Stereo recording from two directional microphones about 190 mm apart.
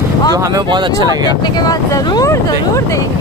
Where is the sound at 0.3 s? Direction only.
20° right (ahead or behind).